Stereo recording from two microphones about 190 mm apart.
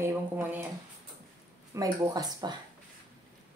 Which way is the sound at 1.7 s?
20° right (ahead or behind).